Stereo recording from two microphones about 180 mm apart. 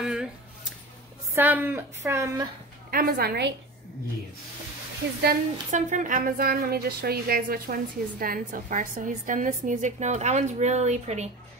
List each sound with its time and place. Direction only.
0.0 s a sound: 5° right (ahead or behind)
1.3 s speech: 10° right (ahead or behind)
2.9 s a woman's voice: 55° right (ahead or behind)
5.7 s a woman's voice: 45° right (ahead or behind)